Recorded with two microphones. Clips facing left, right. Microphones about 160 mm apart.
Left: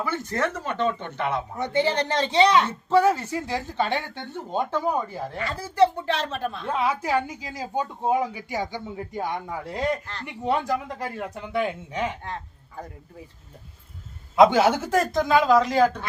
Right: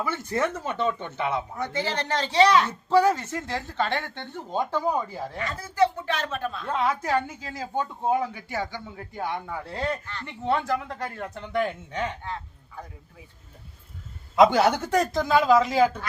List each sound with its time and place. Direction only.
0.1 s speech: 10° right (ahead or behind)
1.5 s speech: 25° left (ahead or behind)
2.9 s speech: 5° left (ahead or behind)
5.4 s speech: 30° left (ahead or behind)
6.7 s speech: 10° left (ahead or behind)
12.2 s speech: 40° left (ahead or behind)
14.3 s speech: centre (ahead or behind)